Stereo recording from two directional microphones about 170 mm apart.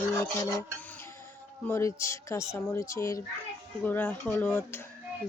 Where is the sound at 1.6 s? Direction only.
15° left (ahead or behind).